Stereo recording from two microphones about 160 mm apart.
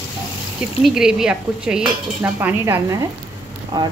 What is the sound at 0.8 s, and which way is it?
Dishes, 5° right (ahead or behind).